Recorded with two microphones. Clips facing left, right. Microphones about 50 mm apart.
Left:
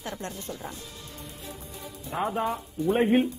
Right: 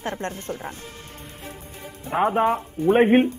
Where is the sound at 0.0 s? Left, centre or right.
Right.